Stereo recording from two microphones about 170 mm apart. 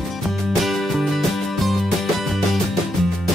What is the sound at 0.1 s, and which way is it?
Music, centre (ahead or behind).